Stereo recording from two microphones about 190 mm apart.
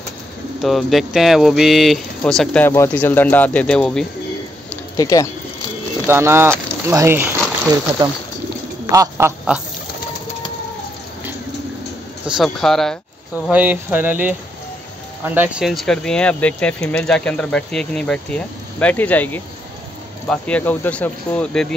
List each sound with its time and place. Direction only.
0.6 s speech: centre (ahead or behind)
4.9 s speech: 20° left (ahead or behind)
6.0 s speech: 10° right (ahead or behind)
8.8 s duck: 15° right (ahead or behind)
9.5 s speech: 5° right (ahead or behind)
12.3 s speech: centre (ahead or behind)